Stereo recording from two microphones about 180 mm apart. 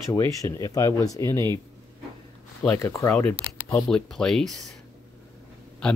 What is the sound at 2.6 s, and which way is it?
Speech, 15° left (ahead or behind).